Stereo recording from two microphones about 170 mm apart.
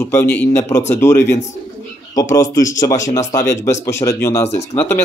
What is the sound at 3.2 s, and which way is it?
Speech, 20° left (ahead or behind).